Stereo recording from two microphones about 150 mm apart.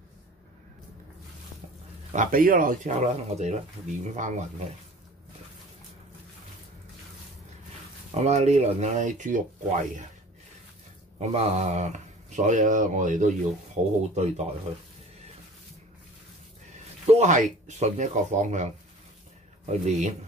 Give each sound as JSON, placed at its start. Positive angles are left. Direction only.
{"t": 2.1, "sound": "speech", "side_deg": -65}
{"t": 8.2, "sound": "speech", "side_deg": -50}
{"t": 11.1, "sound": "speech", "side_deg": -50}
{"t": 17.0, "sound": "speech", "side_deg": -45}